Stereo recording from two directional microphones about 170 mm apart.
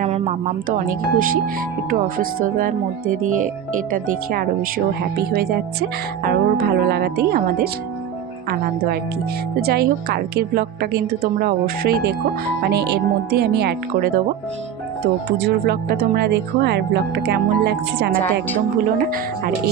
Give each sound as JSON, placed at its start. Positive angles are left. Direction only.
{"t": 0.0, "sound": "a woman's voice", "side_deg": -45}
{"t": 9.6, "sound": "a woman's voice", "side_deg": -65}
{"t": 12.6, "sound": "speech", "side_deg": -75}
{"t": 15.4, "sound": "speech", "side_deg": -70}